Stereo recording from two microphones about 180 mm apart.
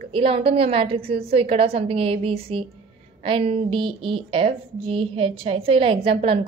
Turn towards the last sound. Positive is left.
turn(degrees=-30)  # may be behind; listen again after turning